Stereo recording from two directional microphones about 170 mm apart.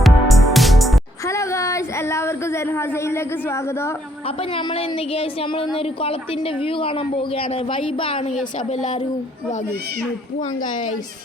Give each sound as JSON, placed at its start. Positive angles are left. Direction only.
{"t": 0.0, "sound": "music", "side_deg": 0}
{"t": 1.2, "sound": "a sound", "side_deg": 15}
{"t": 4.5, "sound": "a woman's voice", "side_deg": 35}